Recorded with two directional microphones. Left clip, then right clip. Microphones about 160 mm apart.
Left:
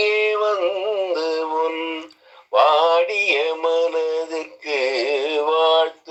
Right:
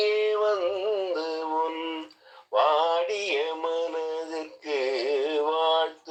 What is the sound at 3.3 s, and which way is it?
Synthetic singing, 45° left (ahead or behind).